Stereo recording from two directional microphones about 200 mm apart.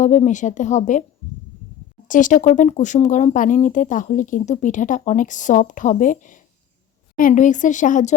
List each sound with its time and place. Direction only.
0.0 s speech: 40° left (ahead or behind)
2.0 s speech: 40° left (ahead or behind)